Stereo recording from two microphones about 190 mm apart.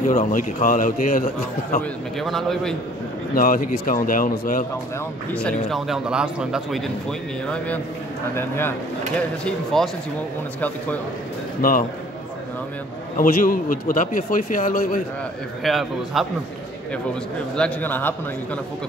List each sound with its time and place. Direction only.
0.1 s a man's voice: 45° left (ahead or behind)
1.8 s speech: centre (ahead or behind)
3.3 s a man's voice: 45° left (ahead or behind)
5.3 s a man's voice: 5° left (ahead or behind)
11.6 s a man's voice: 45° left (ahead or behind)
13.2 s a man's voice: 45° left (ahead or behind)
15.6 s speech: centre (ahead or behind)
17.6 s a man's voice: 5° left (ahead or behind)